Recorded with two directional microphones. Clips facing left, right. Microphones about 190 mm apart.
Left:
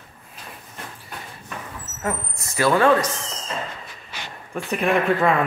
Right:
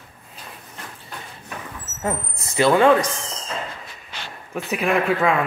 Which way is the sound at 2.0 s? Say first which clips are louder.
Right 1 dB; 25° right (ahead or behind).